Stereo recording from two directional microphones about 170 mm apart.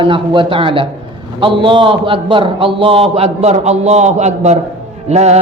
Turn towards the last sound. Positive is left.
turn(degrees=-40)  # may be behind; listen again after turning